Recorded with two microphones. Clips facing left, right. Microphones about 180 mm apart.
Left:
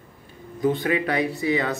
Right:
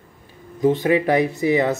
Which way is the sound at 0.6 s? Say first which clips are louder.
Right 5 dB; 25° right (ahead or behind).